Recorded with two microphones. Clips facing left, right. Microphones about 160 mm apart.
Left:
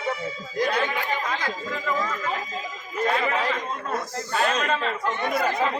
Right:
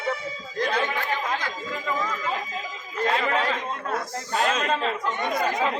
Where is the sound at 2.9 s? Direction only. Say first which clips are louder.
Even; 5° left (ahead or behind).